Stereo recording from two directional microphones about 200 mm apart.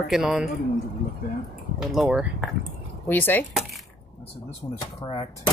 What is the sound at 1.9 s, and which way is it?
Speech, centre (ahead or behind).